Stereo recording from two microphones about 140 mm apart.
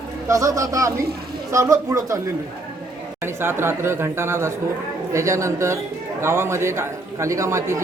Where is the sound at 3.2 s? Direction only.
15° right (ahead or behind).